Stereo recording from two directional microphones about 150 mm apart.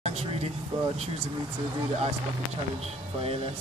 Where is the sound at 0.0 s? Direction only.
45° right (ahead or behind).